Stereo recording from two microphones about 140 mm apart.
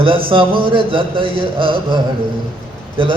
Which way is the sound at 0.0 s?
40° right (ahead or behind).